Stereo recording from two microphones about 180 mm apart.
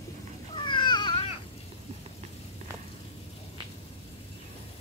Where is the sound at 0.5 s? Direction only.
25° left (ahead or behind).